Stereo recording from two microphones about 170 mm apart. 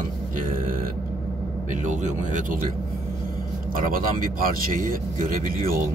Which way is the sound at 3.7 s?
55° right (ahead or behind).